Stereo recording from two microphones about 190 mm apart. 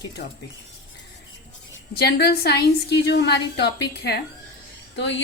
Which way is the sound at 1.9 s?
55° left (ahead or behind).